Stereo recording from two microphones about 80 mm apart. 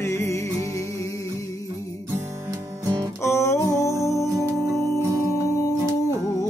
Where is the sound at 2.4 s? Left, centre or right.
Right.